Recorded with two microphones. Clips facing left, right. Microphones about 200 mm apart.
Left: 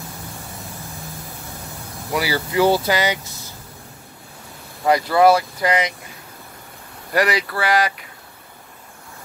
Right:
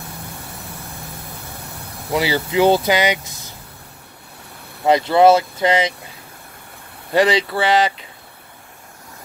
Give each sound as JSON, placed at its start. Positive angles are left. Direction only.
{"t": 2.1, "sound": "speech", "side_deg": -25}
{"t": 4.8, "sound": "speech", "side_deg": -25}
{"t": 7.1, "sound": "speech", "side_deg": -25}